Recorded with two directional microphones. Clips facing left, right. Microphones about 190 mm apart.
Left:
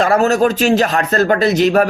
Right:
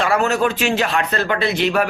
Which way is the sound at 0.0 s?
40° left (ahead or behind).